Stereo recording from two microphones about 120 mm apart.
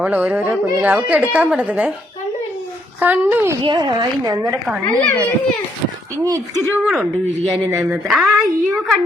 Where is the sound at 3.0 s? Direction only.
15° right (ahead or behind).